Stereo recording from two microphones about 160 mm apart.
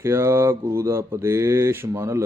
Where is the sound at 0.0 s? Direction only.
15° right (ahead or behind).